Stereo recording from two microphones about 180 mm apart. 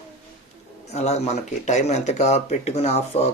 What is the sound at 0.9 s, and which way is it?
Speech, 40° left (ahead or behind).